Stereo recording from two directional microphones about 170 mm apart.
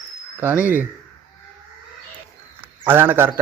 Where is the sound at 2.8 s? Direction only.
10° right (ahead or behind).